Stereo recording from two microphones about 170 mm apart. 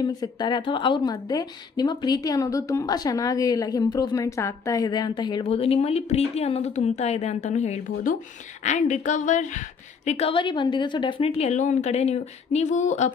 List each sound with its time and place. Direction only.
0.0 s a woman's voice: 25° left (ahead or behind); by 13.1 s 45° left (ahead or behind)